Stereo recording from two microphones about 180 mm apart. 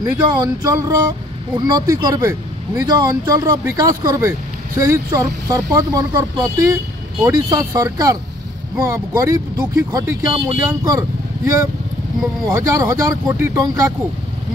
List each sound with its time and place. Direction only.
0.3 s speech: 20° right (ahead or behind)